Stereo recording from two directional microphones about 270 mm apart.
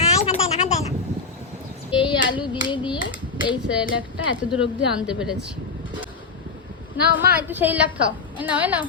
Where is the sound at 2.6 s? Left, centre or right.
Centre.